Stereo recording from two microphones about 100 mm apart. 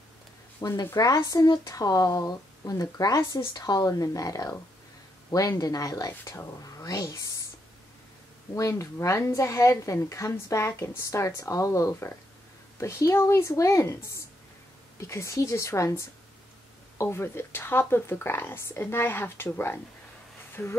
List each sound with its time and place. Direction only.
0.6 s speech: 30° left (ahead or behind)
8.5 s speech: 30° left (ahead or behind)